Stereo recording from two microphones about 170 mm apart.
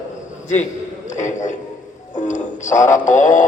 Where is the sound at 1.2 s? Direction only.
45° left (ahead or behind).